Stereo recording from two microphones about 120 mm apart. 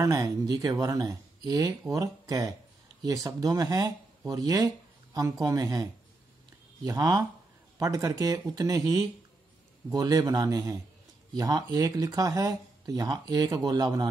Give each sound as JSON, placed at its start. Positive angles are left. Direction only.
{"t": 0.0, "sound": "speech", "side_deg": -30}
{"t": 6.9, "sound": "speech", "side_deg": -30}
{"t": 9.8, "sound": "speech", "side_deg": -30}